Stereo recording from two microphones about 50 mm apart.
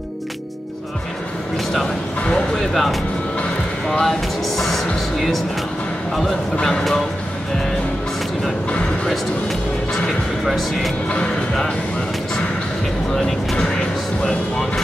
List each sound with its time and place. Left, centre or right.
2.5 s speech: centre
3.8 s speech: centre
4.6 s speech: centre
6.5 s speech: centre
10.4 s speech: centre
13.1 s speech: centre